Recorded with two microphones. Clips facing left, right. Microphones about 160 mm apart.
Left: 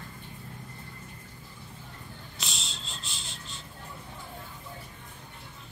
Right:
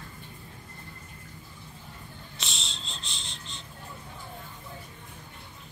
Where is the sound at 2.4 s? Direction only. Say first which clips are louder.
Right 1 dB; centre (ahead or behind).